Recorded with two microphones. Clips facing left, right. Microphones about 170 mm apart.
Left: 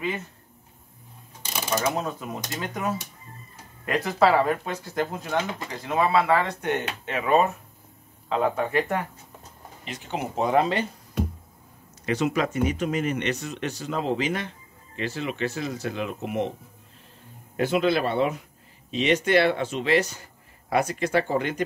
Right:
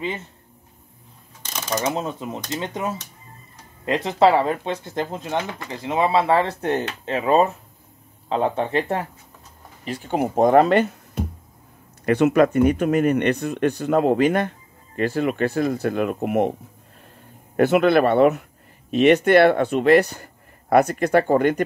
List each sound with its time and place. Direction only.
1.4 s mechanisms: 10° left (ahead or behind)
2.0 s speech: 25° right (ahead or behind)
5.4 s speech: 20° left (ahead or behind)
5.7 s speech: 25° right (ahead or behind)
10.0 s speech: 50° right (ahead or behind)
12.1 s speech: 60° right (ahead or behind)
17.6 s speech: 60° right (ahead or behind)